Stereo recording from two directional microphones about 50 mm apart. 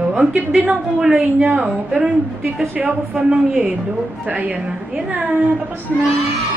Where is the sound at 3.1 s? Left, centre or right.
Centre.